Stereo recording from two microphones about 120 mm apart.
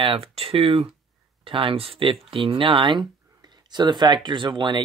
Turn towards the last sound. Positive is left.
turn(degrees=-40)  # may be behind; listen again after turning